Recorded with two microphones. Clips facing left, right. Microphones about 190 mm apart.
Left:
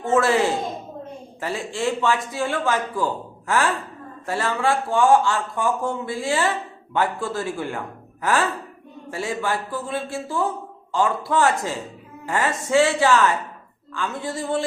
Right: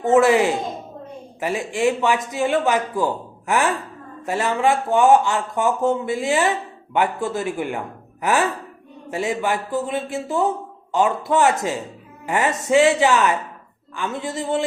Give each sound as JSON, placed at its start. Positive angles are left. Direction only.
{"t": 0.0, "sound": "a man's voice", "side_deg": -15}